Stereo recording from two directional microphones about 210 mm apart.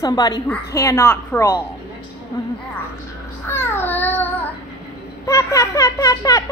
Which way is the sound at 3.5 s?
10° left (ahead or behind).